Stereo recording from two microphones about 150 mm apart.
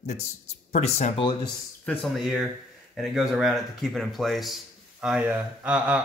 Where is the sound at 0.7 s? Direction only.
45° left (ahead or behind).